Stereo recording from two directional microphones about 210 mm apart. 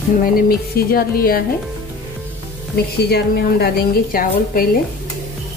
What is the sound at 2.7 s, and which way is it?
Speech, 50° left (ahead or behind).